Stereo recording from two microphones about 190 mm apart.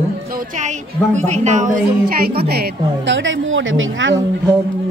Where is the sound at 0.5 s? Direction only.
40° right (ahead or behind); by 4.1 s 90° right.